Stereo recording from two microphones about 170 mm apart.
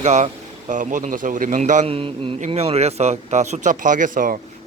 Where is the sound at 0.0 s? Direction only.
40° right (ahead or behind).